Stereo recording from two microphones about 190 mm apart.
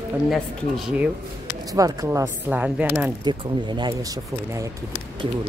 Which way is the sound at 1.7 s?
15° right (ahead or behind).